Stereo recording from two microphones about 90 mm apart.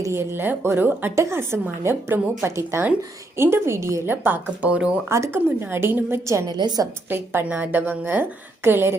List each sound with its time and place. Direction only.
0.0 s a woman's voice: 30° right (ahead or behind)
5.0 s a woman's voice: 30° right (ahead or behind)
6.5 s a woman's voice: 50° right (ahead or behind)
7.4 s a woman's voice: 20° right (ahead or behind)